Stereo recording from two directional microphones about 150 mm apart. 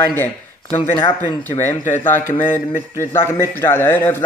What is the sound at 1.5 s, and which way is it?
Speech, 15° left (ahead or behind).